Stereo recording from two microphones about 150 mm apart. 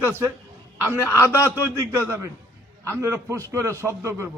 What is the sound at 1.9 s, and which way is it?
A man's voice, 15° right (ahead or behind).